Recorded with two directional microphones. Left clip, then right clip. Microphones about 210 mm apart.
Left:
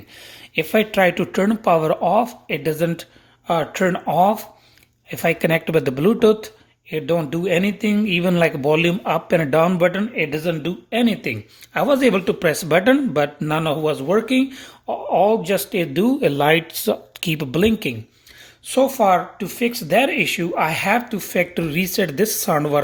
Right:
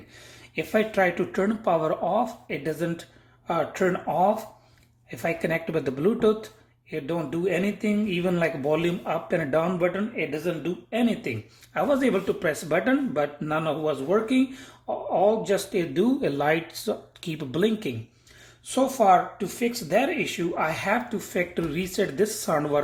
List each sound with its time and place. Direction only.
0.5 s speech: 40° left (ahead or behind)